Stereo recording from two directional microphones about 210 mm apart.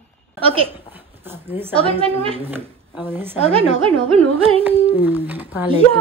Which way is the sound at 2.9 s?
10° right (ahead or behind).